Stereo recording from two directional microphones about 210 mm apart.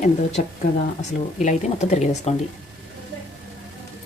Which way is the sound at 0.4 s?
40° left (ahead or behind).